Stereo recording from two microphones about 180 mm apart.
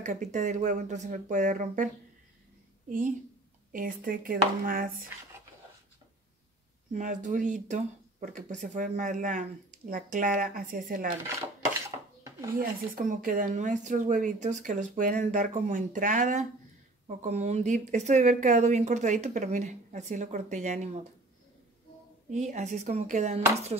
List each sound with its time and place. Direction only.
0.0 s speech: 40° right (ahead or behind)
3.7 s speech: 50° right (ahead or behind)
6.9 s speech: 45° right (ahead or behind)
12.5 s speech: 50° right (ahead or behind)
22.3 s speech: 40° right (ahead or behind)